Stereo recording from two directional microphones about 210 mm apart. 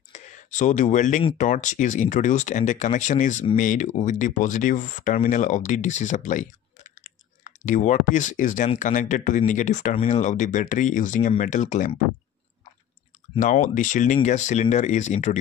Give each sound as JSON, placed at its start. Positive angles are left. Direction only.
{"t": 0.1, "sound": "speech", "side_deg": 35}
{"t": 13.4, "sound": "speech", "side_deg": 35}